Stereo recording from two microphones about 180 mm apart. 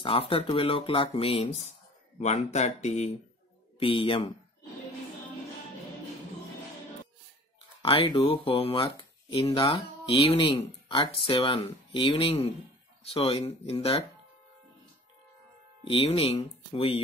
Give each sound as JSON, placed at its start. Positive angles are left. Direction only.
{"t": 0.0, "sound": "speech", "side_deg": 30}
{"t": 7.8, "sound": "speech", "side_deg": 30}
{"t": 15.9, "sound": "speech", "side_deg": 30}